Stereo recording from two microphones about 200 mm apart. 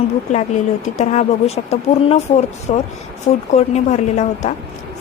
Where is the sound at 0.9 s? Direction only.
35° left (ahead or behind).